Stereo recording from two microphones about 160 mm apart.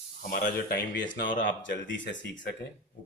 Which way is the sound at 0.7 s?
70° left (ahead or behind).